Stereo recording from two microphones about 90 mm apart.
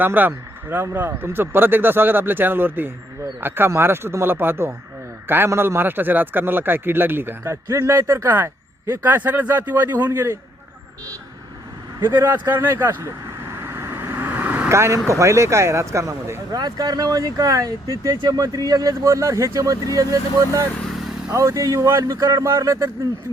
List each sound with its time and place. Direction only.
0.0 s a man's voice: 20° right (ahead or behind)
7.4 s a man's voice: 35° right (ahead or behind)
12.1 s vehicle: 25° right (ahead or behind)
14.7 s speech: 30° right (ahead or behind)
16.6 s speech: 45° right (ahead or behind)